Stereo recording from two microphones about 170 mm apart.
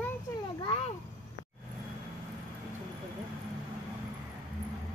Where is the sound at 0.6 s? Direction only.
35° left (ahead or behind).